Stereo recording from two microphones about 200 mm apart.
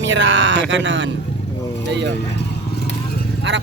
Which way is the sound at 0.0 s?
65° right (ahead or behind).